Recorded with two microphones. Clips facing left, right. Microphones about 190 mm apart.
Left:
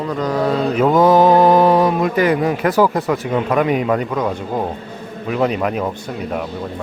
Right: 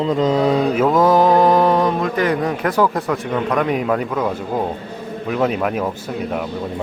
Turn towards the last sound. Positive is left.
turn(degrees=0)  # may be behind; listen again after turning